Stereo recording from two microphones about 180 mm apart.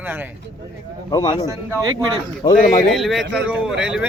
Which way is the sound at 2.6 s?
50° left (ahead or behind).